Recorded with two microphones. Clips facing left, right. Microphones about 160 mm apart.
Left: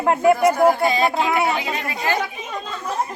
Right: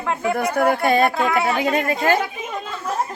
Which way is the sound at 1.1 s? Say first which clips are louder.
Even; 25° left (ahead or behind).